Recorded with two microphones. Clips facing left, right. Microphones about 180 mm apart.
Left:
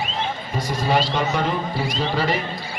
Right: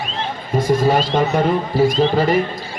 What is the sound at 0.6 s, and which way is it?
A man's voice, 45° right (ahead or behind).